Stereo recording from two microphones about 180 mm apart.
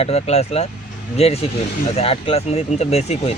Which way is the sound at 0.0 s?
35° left (ahead or behind).